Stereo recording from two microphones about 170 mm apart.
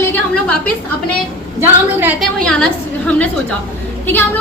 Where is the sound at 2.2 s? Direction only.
5° left (ahead or behind).